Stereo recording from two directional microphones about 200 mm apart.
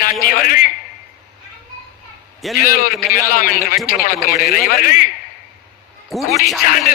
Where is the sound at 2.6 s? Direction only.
45° left (ahead or behind).